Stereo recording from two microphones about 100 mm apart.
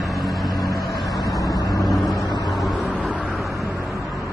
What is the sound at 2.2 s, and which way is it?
Vehicle, 40° left (ahead or behind).